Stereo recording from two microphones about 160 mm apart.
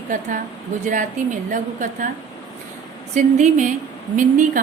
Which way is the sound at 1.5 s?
55° right (ahead or behind).